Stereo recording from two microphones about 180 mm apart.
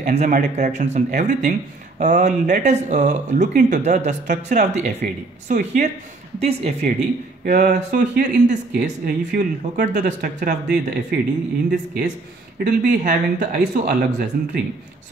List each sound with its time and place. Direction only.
0.0 s a woman's voice: 40° right (ahead or behind)
7.4 s speech: 45° right (ahead or behind)